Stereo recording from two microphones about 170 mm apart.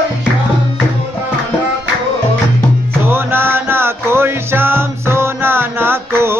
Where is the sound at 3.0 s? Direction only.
15° right (ahead or behind).